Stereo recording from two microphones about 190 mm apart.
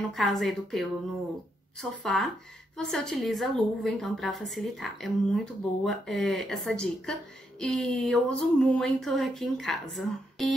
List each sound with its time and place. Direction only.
0.1 s a woman's voice: centre (ahead or behind)